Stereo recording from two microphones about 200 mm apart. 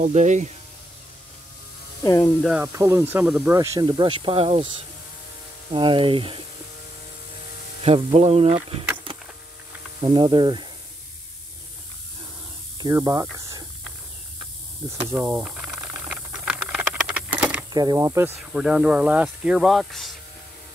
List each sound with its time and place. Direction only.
0.0 s speech: 35° right (ahead or behind)
2.0 s speech: 15° left (ahead or behind)
2.4 s speech: 10° right (ahead or behind)
3.5 s speech: 15° right (ahead or behind)
5.7 s speech: 25° right (ahead or behind)
7.8 s speech: 30° right (ahead or behind)
10.0 s speech: 25° right (ahead or behind)
12.7 s speech: 20° right (ahead or behind)
15.0 s rattle: 10° right (ahead or behind)
17.7 s speech: 15° right (ahead or behind); by 20.1 s centre (ahead or behind)